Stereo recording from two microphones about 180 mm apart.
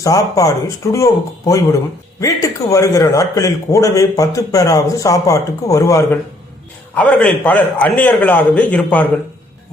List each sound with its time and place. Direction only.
0.0 s a man's voice: 20° left (ahead or behind)